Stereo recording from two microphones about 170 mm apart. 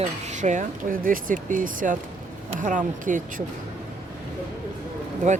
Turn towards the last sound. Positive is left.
turn(degrees=-45)  # may be behind; listen again after turning